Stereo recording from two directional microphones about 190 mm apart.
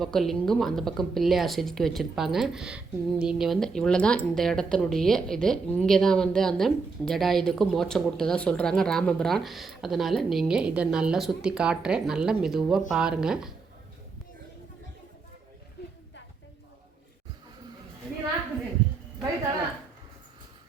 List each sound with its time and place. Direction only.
0.0 s a woman's voice: centre (ahead or behind)